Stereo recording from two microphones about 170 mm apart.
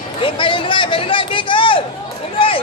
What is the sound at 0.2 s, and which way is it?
Speech, 30° left (ahead or behind).